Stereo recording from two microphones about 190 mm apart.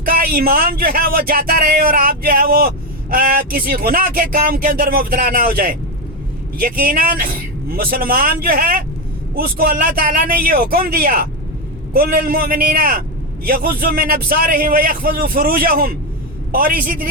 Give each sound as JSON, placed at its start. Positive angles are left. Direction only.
{"t": 0.0, "sound": "speech", "side_deg": -50}